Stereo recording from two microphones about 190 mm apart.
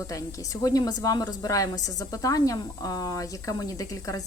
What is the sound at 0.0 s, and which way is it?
A woman's voice, 15° left (ahead or behind).